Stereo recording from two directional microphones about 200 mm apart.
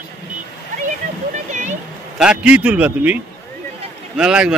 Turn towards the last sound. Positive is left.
turn(degrees=-5)  # may be behind; listen again after turning